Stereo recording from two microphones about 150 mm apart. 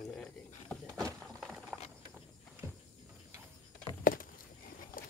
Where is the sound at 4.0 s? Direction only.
65° left (ahead or behind).